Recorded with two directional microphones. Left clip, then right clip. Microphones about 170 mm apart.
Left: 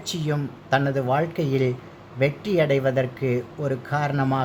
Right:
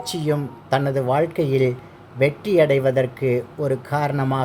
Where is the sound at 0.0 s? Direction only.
15° right (ahead or behind).